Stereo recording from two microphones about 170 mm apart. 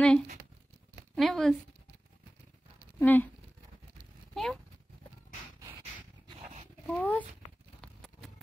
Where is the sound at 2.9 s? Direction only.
10° left (ahead or behind).